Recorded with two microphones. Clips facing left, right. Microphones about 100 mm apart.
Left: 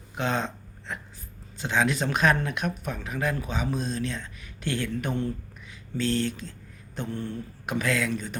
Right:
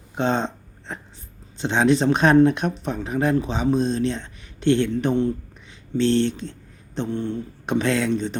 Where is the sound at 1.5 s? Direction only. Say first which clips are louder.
Right 7 dB; 30° right (ahead or behind).